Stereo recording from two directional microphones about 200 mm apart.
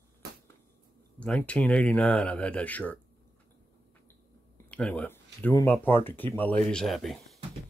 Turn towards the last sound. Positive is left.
turn(degrees=0)  # may be behind; listen again after turning